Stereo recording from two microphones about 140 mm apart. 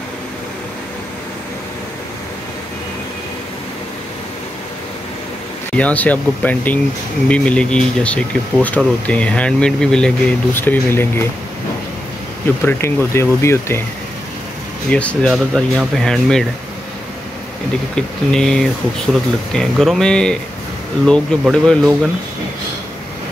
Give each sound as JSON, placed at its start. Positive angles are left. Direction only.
{"t": 5.8, "sound": "speech", "side_deg": 10}
{"t": 12.6, "sound": "speech", "side_deg": 20}
{"t": 14.9, "sound": "speech", "side_deg": 10}
{"t": 17.9, "sound": "speech", "side_deg": 5}